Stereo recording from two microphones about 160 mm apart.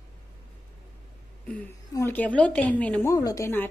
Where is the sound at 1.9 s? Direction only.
15° left (ahead or behind).